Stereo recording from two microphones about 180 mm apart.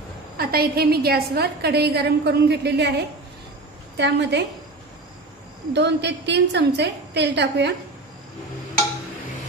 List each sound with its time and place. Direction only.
0.4 s a woman's voice: 60° right (ahead or behind)
5.7 s a woman's voice: 70° right (ahead or behind)